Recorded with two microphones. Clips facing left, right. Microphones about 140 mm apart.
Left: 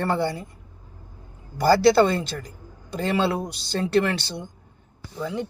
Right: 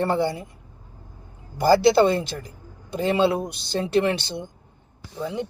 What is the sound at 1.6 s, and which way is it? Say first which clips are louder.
A man's voice: even; 20° right (ahead or behind).